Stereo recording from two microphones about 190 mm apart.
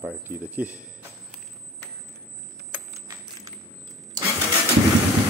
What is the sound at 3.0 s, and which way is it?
Bicycle bell, 20° right (ahead or behind).